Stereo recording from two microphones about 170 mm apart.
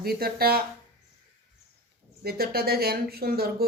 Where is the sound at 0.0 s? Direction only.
65° right (ahead or behind).